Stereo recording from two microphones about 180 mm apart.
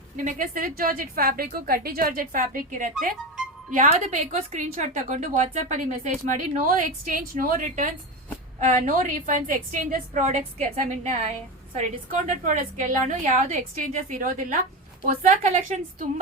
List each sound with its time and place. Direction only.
0.3 s a woman's voice: 50° right (ahead or behind)